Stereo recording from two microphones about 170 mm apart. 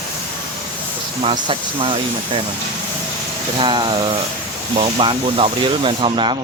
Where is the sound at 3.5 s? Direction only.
30° right (ahead or behind).